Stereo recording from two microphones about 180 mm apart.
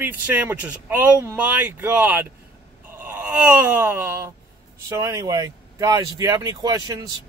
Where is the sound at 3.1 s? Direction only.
10° right (ahead or behind).